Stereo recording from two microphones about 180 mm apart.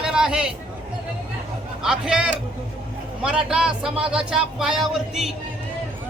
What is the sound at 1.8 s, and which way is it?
Speech, 5° right (ahead or behind).